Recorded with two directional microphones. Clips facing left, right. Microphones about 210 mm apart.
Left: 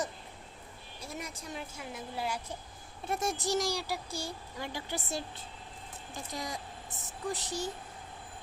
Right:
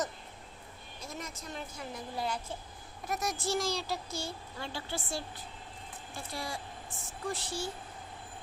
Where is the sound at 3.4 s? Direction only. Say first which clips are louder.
Right 1 dB; 15° left (ahead or behind).